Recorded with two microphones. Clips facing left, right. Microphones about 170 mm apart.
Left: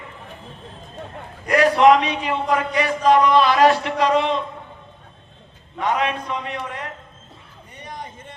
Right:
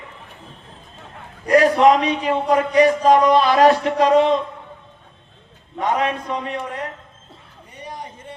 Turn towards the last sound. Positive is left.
turn(degrees=-40)  # may be behind; listen again after turning